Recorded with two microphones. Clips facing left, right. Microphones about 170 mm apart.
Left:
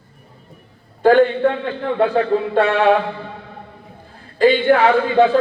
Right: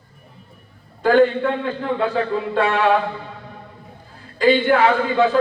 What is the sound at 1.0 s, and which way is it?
A man's voice, 50° left (ahead or behind).